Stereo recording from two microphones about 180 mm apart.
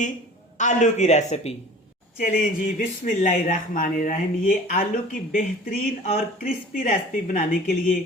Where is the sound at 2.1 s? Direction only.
50° left (ahead or behind).